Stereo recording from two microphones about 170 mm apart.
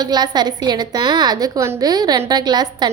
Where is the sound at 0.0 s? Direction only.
25° right (ahead or behind).